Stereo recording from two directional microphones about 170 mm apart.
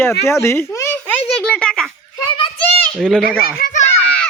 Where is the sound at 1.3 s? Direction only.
5° left (ahead or behind).